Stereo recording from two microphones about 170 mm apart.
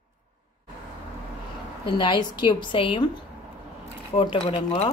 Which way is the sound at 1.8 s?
25° left (ahead or behind).